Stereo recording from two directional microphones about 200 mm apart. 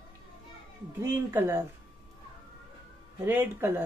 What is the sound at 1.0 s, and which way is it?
Speech, 10° right (ahead or behind).